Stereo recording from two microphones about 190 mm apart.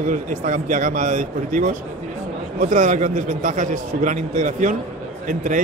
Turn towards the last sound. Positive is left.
turn(degrees=-45)  # may be behind; listen again after turning